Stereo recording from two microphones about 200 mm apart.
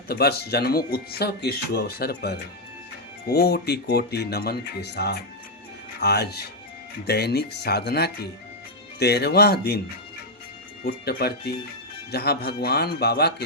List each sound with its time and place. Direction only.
0.1 s speech: 50° left (ahead or behind)
10.8 s speech: 50° left (ahead or behind)